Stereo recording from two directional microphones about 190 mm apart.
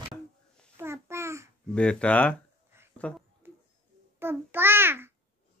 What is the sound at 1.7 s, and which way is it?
Speech, 5° left (ahead or behind).